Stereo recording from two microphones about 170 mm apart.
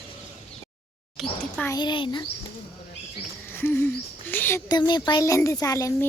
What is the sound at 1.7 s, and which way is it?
Speech, 25° left (ahead or behind).